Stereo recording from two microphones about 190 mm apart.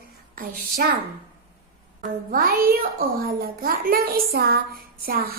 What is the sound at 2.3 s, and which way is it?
A woman's voice, 50° right (ahead or behind).